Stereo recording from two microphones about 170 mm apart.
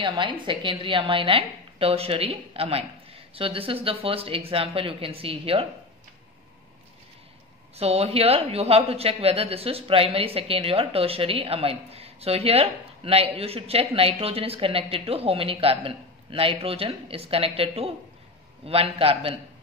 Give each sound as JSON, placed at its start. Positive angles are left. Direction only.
{"t": 0.0, "sound": "speech", "side_deg": -30}
{"t": 7.7, "sound": "speech", "side_deg": -40}